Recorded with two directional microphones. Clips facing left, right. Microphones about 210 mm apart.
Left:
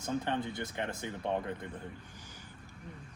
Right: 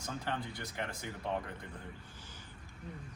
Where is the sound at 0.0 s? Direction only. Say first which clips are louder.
Left 6 dB; 20° left (ahead or behind).